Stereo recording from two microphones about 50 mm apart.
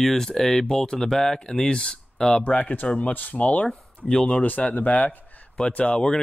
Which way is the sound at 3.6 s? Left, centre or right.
Centre.